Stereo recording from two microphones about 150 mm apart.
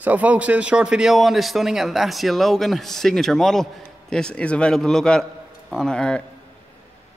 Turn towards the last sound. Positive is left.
turn(degrees=5)  # may be behind; listen again after turning